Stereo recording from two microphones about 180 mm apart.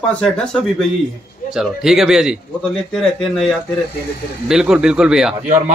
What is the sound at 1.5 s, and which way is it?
Speech, 5° right (ahead or behind).